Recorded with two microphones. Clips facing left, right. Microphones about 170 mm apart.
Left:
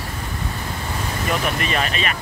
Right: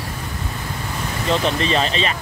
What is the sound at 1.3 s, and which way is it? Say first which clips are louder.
Speech: right 5 dB; 25° right (ahead or behind).